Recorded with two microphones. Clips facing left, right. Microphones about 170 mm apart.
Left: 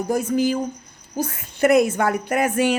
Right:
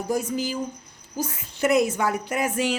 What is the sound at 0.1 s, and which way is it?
A woman's voice, 55° left (ahead or behind).